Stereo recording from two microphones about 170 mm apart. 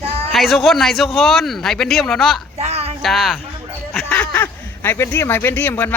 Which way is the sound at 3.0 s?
Centre (ahead or behind).